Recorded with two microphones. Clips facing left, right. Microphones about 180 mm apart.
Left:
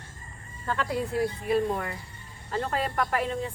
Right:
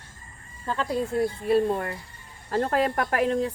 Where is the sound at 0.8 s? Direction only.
30° right (ahead or behind).